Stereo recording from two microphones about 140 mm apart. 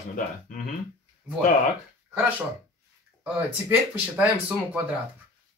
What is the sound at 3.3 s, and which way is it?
Speech, 10° right (ahead or behind).